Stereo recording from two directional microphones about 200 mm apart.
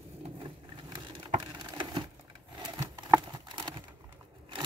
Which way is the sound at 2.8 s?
20° right (ahead or behind).